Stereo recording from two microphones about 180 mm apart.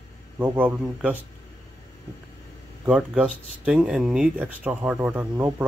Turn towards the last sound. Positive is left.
turn(degrees=-10)  # may be behind; listen again after turning